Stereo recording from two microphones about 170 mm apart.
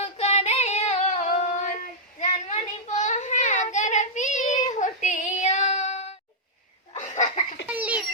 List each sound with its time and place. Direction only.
0.0 s female singing: 40° left (ahead or behind)
2.1 s child singing: 45° left (ahead or behind)
6.9 s laughter: 45° left (ahead or behind)
7.7 s a sound: 10° right (ahead or behind)